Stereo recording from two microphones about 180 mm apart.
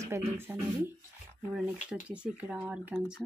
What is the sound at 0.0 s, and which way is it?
Speech, 15° right (ahead or behind).